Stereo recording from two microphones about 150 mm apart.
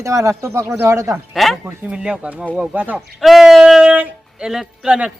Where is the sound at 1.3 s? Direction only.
Centre (ahead or behind).